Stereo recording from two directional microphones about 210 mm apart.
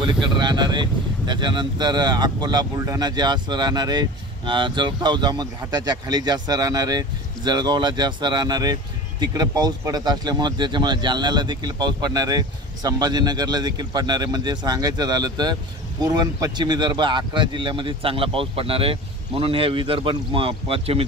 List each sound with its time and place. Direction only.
0.0 s speech: 20° right (ahead or behind)